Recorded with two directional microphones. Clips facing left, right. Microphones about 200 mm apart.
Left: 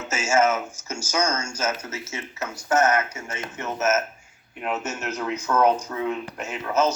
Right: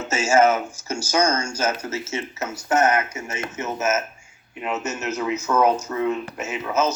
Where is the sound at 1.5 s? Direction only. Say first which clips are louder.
Right 3 dB; 30° right (ahead or behind); by 4.0 s 10° right (ahead or behind).